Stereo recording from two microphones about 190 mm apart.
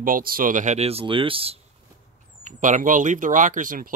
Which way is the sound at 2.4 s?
40° right (ahead or behind).